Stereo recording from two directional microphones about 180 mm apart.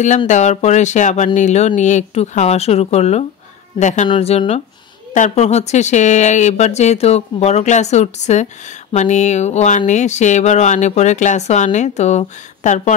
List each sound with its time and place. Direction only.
0.3 s a woman's voice: 40° left (ahead or behind)